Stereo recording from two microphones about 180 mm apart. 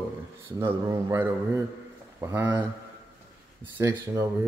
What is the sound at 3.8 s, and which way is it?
Speech, 20° right (ahead or behind).